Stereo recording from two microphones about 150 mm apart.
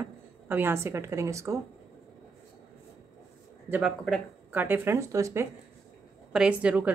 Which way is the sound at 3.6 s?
10° right (ahead or behind).